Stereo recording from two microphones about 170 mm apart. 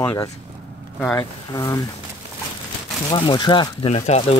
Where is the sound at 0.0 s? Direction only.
20° left (ahead or behind).